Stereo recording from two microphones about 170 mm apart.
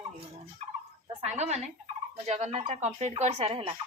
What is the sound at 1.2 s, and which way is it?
Speech, 40° right (ahead or behind).